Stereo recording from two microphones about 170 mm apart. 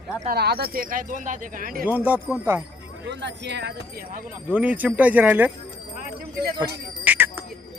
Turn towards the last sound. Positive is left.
turn(degrees=-10)  # may be behind; listen again after turning